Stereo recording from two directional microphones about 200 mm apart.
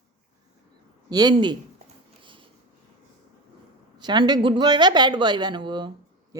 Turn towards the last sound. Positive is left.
turn(degrees=-20)  # may be behind; listen again after turning